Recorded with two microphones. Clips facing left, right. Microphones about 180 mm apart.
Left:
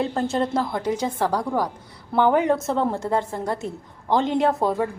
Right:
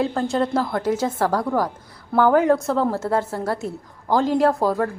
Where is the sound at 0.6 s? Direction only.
15° left (ahead or behind).